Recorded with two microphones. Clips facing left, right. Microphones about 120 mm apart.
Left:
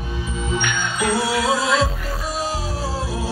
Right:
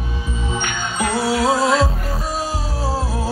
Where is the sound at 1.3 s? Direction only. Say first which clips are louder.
Right 3 dB; 40° right (ahead or behind).